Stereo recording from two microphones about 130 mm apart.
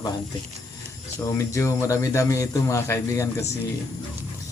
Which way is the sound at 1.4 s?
25° left (ahead or behind).